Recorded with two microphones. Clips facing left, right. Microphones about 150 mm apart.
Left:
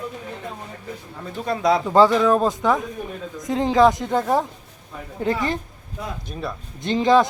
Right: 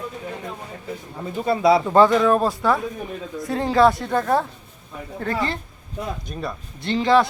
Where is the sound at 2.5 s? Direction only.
20° left (ahead or behind).